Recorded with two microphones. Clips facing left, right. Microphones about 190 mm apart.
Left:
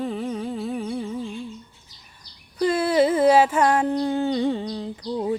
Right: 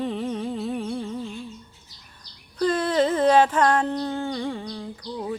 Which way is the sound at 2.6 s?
10° left (ahead or behind).